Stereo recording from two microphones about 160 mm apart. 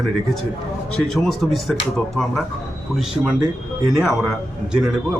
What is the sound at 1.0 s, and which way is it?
A man's voice, centre (ahead or behind).